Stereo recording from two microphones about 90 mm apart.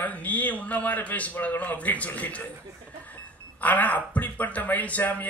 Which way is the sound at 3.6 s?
15° left (ahead or behind).